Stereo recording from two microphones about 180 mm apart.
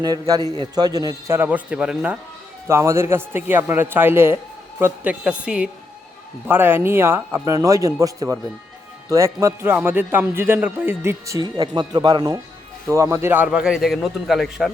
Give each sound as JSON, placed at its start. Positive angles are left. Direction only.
{"t": 0.0, "sound": "a man's voice", "side_deg": -20}